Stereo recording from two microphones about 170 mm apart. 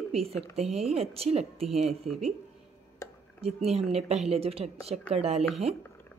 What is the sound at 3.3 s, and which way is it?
Speech, 35° right (ahead or behind).